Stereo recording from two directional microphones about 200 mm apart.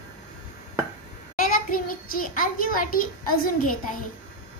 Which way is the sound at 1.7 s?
45° left (ahead or behind).